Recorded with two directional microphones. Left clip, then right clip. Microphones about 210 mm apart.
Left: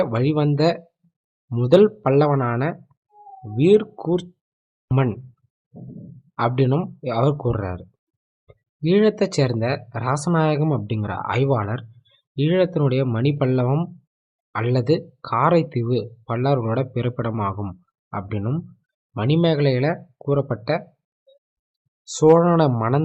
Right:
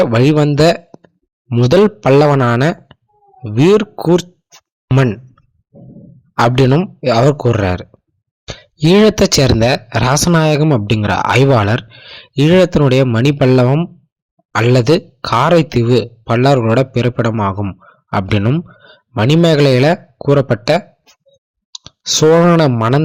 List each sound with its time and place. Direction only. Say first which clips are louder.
0.0 s speech: right 9 dB; 30° right (ahead or behind)
6.3 s speech: right 9 dB; 35° right (ahead or behind)
22.1 s speech: right 6 dB; 25° right (ahead or behind)